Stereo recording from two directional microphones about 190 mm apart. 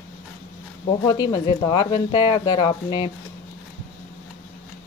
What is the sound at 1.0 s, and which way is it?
A woman's voice, 20° left (ahead or behind).